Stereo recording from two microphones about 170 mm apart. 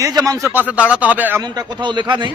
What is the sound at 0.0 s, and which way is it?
Speech, 25° right (ahead or behind).